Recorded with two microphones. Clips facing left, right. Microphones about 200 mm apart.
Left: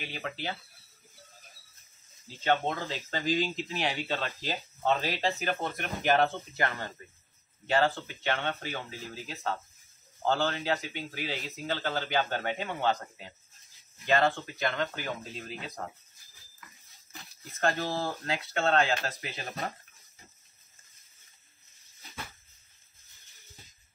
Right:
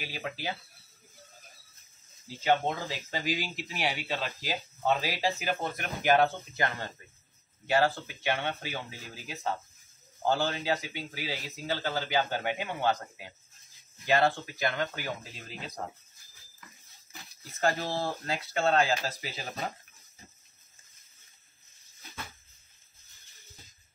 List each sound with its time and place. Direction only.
0.0 s speech: 5° right (ahead or behind)
2.4 s speech: 10° right (ahead or behind)
7.6 s speech: 10° right (ahead or behind)
17.5 s speech: centre (ahead or behind)